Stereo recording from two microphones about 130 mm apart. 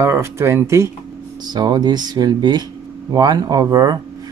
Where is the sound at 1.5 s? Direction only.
30° right (ahead or behind).